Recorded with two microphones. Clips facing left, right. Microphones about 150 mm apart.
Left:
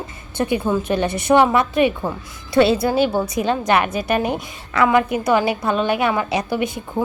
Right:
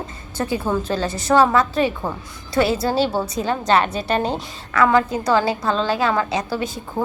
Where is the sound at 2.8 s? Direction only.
15° left (ahead or behind).